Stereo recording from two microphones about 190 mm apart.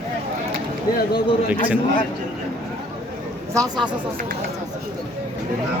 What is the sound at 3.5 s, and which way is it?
Speech, 20° right (ahead or behind).